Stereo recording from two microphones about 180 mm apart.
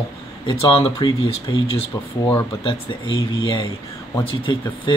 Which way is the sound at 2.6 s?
25° left (ahead or behind).